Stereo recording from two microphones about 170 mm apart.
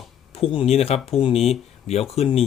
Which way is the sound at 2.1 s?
35° left (ahead or behind).